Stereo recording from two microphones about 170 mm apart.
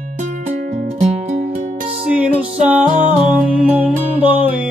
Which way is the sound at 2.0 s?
10° right (ahead or behind).